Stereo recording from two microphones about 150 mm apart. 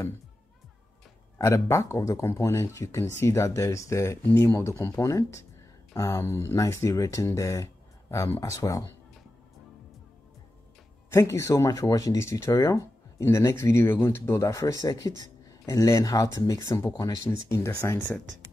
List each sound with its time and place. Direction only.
1.4 s speech: 20° left (ahead or behind)
11.1 s speech: 20° left (ahead or behind)